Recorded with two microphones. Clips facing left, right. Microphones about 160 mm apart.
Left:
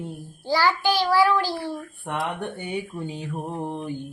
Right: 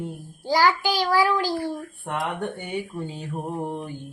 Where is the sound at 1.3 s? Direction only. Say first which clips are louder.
Even; 45° right (ahead or behind).